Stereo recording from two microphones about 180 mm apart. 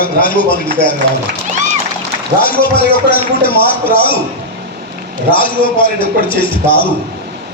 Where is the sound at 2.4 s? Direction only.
55° left (ahead or behind).